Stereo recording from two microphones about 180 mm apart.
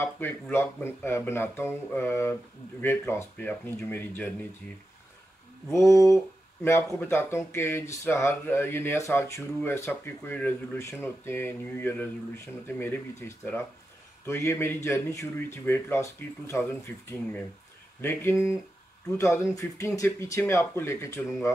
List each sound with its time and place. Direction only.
0.0 s speech: 10° left (ahead or behind)
5.7 s speech: 15° left (ahead or behind)
14.2 s speech: 15° left (ahead or behind)
18.0 s speech: 15° left (ahead or behind)